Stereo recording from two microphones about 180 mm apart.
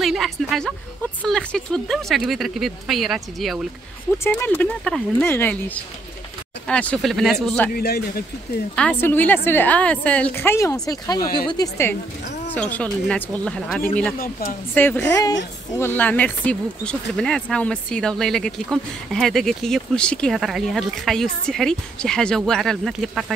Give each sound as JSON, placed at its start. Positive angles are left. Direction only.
{"t": 0.0, "sound": "speech", "side_deg": 0}
{"t": 4.2, "sound": "a woman's voice", "side_deg": 10}
{"t": 6.7, "sound": "speech", "side_deg": 5}
{"t": 7.7, "sound": "speech", "side_deg": 60}
{"t": 8.7, "sound": "a woman's voice", "side_deg": 10}
{"t": 12.5, "sound": "a woman's voice", "side_deg": 5}